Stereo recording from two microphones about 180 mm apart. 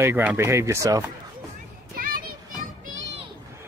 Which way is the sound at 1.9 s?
50° right (ahead or behind).